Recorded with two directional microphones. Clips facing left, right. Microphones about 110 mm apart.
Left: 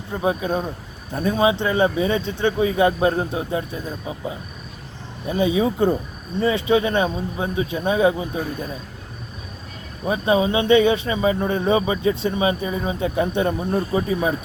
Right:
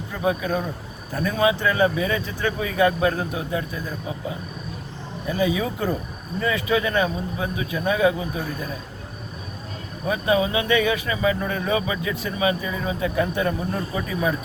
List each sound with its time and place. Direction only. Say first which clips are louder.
0.1 s speech: left 2 dB; 25° left (ahead or behind)
10.1 s speech: left 2 dB; 25° left (ahead or behind)